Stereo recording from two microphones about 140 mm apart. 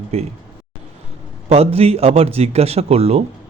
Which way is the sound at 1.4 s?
45° right (ahead or behind).